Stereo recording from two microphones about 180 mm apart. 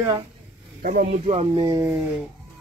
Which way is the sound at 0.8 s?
55° right (ahead or behind).